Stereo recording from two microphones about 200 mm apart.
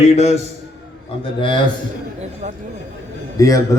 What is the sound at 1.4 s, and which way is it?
Speech, 25° left (ahead or behind).